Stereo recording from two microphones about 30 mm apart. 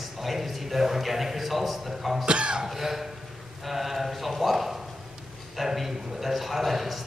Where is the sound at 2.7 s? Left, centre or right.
Centre.